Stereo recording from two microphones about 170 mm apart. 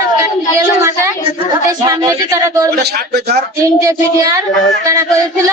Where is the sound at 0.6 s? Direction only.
15° right (ahead or behind).